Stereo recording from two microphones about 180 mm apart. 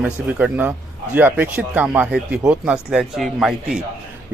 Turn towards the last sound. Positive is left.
turn(degrees=0)  # may be behind; listen again after turning